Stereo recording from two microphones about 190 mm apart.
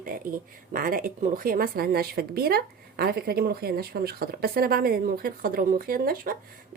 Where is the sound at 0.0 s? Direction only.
50° right (ahead or behind).